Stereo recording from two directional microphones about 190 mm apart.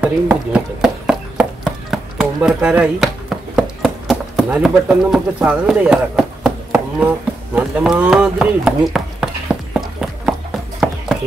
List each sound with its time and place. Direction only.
0.0 s horse: 10° right (ahead or behind)
4.5 s speech: 5° right (ahead or behind)
7.5 s chopping: 5° right (ahead or behind)